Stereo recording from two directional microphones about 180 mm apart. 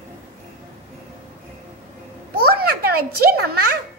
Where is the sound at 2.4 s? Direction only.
60° right (ahead or behind).